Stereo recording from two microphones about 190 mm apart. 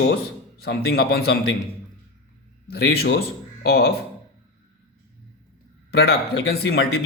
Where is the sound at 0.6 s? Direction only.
55° left (ahead or behind).